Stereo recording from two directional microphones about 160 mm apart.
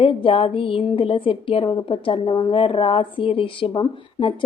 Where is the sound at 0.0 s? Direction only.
35° left (ahead or behind).